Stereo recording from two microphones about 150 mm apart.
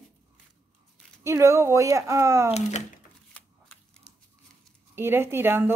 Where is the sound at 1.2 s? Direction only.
20° right (ahead or behind).